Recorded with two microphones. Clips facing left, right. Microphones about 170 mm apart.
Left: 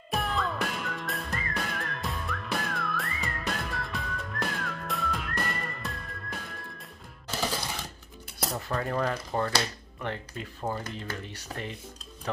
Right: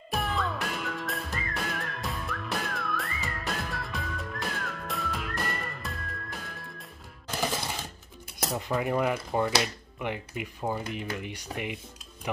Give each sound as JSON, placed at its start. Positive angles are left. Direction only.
{"t": 0.1, "sound": "music", "side_deg": 0}
{"t": 7.2, "sound": "music", "side_deg": -15}
{"t": 8.4, "sound": "speech", "side_deg": -15}